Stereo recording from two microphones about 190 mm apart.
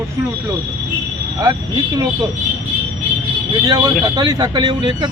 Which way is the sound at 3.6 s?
20° right (ahead or behind).